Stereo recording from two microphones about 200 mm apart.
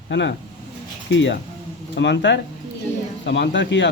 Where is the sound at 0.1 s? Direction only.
60° left (ahead or behind).